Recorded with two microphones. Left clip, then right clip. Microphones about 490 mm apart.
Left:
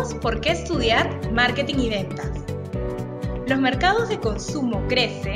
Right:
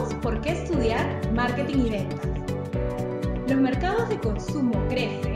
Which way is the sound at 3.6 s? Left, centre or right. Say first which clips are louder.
Left 7 dB; centre.